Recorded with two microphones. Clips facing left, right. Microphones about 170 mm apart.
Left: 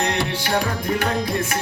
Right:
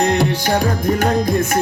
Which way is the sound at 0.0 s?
45° right (ahead or behind).